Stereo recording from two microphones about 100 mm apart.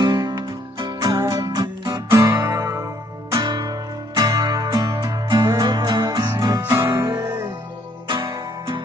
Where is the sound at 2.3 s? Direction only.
30° right (ahead or behind).